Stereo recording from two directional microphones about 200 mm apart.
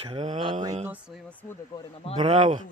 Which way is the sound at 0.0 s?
30° right (ahead or behind).